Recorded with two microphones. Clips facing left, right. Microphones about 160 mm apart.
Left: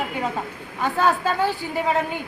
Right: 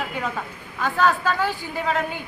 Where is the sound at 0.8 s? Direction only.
30° left (ahead or behind).